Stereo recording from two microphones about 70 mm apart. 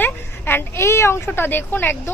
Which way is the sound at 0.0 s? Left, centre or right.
Left.